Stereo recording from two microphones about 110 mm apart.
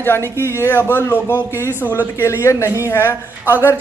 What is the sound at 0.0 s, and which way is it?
A woman's voice, 20° left (ahead or behind).